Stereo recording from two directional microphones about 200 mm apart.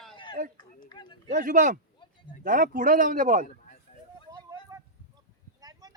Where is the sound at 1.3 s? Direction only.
40° right (ahead or behind).